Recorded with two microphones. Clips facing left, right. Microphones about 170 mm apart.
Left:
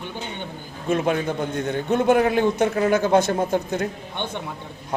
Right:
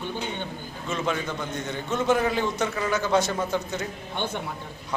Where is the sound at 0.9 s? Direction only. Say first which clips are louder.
Left 7 dB; 55° left (ahead or behind).